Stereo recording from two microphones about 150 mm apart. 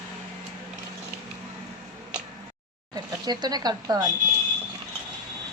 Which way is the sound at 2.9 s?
25° right (ahead or behind).